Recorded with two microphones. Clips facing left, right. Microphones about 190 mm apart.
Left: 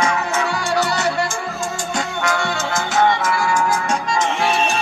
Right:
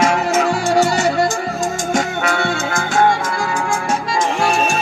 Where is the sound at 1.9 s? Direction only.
55° right (ahead or behind).